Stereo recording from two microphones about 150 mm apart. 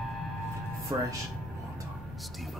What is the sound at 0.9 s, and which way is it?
Speech, 30° right (ahead or behind).